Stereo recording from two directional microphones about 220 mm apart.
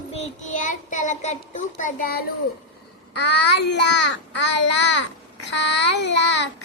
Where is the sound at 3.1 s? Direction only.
50° left (ahead or behind).